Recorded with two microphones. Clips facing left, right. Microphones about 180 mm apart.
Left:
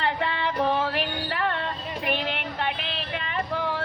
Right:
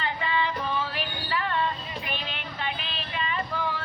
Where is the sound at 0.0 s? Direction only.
65° left (ahead or behind).